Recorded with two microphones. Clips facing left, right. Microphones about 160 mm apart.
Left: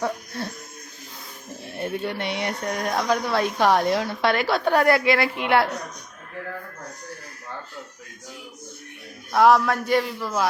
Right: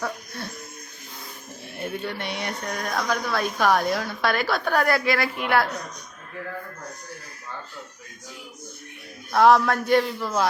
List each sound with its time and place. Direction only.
1.8 s speech: 25° left (ahead or behind)
9.3 s a man's voice: 5° left (ahead or behind)